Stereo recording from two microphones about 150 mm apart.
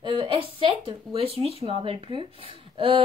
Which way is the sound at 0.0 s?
35° right (ahead or behind).